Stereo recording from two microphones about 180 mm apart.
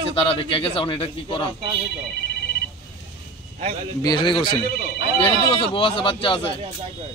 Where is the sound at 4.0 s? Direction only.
25° left (ahead or behind).